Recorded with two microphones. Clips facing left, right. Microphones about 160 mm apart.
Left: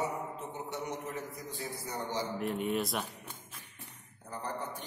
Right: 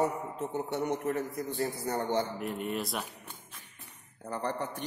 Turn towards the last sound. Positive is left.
turn(degrees=-70)  # may be behind; listen again after turning